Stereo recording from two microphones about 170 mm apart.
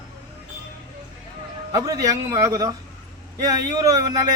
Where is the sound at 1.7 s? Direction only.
20° right (ahead or behind).